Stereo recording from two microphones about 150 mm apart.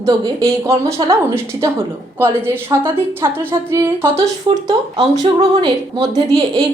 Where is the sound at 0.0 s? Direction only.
20° right (ahead or behind).